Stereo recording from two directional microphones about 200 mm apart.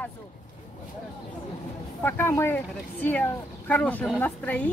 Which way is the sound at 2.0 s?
10° left (ahead or behind).